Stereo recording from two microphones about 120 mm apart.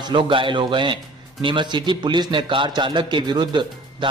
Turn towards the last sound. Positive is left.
turn(degrees=-40)  # may be behind; listen again after turning